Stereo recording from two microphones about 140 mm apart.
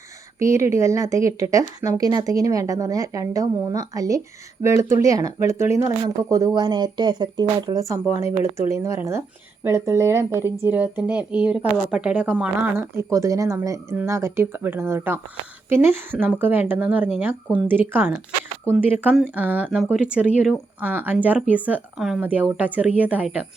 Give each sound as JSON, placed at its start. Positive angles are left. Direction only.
{"t": 0.3, "sound": "a woman's voice", "side_deg": -20}
{"t": 12.8, "sound": "speech", "side_deg": -20}
{"t": 16.2, "sound": "speech", "side_deg": -15}